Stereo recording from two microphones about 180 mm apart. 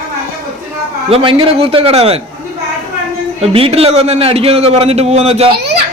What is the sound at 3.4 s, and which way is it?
A man's voice, 30° right (ahead or behind).